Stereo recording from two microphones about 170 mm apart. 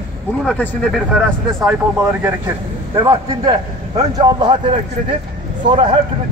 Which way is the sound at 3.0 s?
25° right (ahead or behind).